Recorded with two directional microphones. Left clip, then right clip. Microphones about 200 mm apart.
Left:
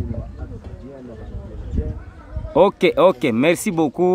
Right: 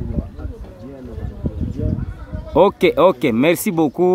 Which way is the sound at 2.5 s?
Centre (ahead or behind).